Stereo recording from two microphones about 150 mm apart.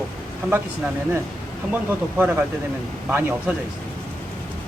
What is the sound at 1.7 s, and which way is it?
Speech, 15° right (ahead or behind).